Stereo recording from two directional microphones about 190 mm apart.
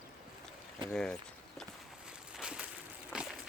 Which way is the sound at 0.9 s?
5° left (ahead or behind).